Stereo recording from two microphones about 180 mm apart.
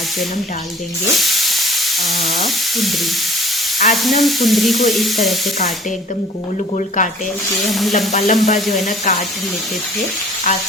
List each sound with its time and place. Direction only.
1.1 s sizzle: centre (ahead or behind)
2.4 s stir: centre (ahead or behind)
4.0 s stir: centre (ahead or behind)
6.7 s speech: 45° left (ahead or behind)
7.7 s stir: centre (ahead or behind)
7.9 s frying: 40° left (ahead or behind)
8.7 s speech: 40° left (ahead or behind)